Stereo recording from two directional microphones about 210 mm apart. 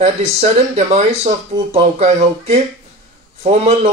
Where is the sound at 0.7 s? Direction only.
30° right (ahead or behind).